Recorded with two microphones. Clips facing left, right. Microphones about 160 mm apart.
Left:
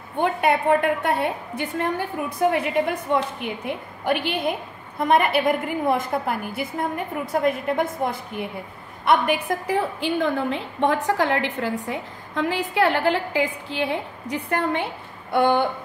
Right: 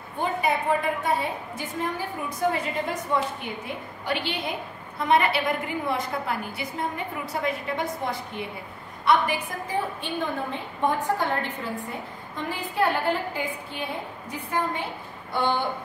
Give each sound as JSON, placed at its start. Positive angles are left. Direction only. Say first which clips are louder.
{"t": 0.2, "sound": "a woman's voice", "louder": "left 5 dB", "side_deg": 65}
{"t": 14.3, "sound": "a woman's voice", "louder": "left 5 dB", "side_deg": 70}
{"t": 15.3, "sound": "a sound", "louder": "left 6 dB", "side_deg": 55}